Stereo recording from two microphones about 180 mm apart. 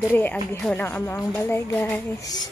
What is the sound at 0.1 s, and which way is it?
Speech, 10° left (ahead or behind).